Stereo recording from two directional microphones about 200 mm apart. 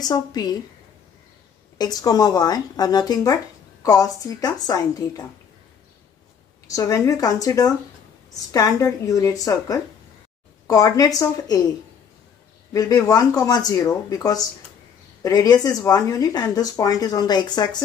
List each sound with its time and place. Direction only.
0.0 s speech: 20° left (ahead or behind)
1.8 s speech: 20° left (ahead or behind)
6.7 s speech: 15° left (ahead or behind)
12.7 s speech: 15° left (ahead or behind)